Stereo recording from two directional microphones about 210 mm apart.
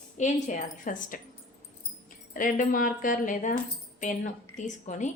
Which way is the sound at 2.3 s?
40° left (ahead or behind).